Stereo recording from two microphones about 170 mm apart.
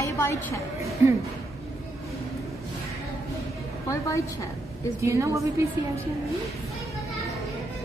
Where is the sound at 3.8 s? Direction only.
15° left (ahead or behind).